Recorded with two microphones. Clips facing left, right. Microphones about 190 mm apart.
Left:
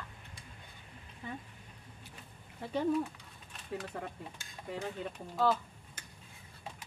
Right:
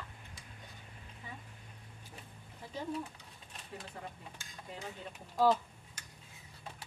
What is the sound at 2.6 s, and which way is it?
Speech, 65° left (ahead or behind).